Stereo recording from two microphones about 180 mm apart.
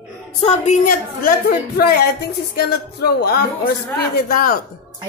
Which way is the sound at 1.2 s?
60° left (ahead or behind).